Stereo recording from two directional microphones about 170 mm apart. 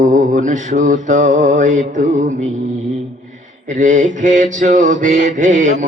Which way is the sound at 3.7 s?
50° right (ahead or behind).